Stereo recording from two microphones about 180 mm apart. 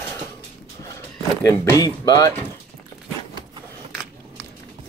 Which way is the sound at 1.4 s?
15° left (ahead or behind).